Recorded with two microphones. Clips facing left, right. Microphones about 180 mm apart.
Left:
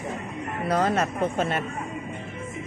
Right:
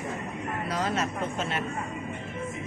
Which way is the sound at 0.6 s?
55° left (ahead or behind).